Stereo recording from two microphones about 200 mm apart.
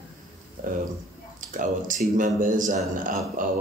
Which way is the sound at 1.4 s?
40° right (ahead or behind).